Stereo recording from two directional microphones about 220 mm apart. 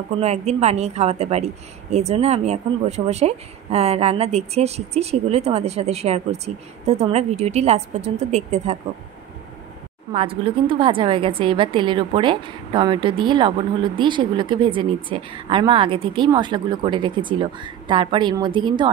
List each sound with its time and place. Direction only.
0.2 s a woman's voice: 30° right (ahead or behind)
10.1 s a woman's voice: 25° right (ahead or behind)